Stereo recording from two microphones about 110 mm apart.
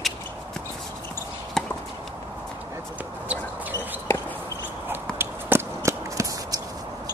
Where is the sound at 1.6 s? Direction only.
5° left (ahead or behind).